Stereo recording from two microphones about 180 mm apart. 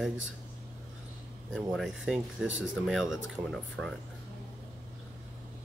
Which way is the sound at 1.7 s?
Centre (ahead or behind).